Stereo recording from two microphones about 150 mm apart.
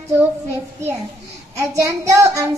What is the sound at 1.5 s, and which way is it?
A woman's voice, 20° right (ahead or behind).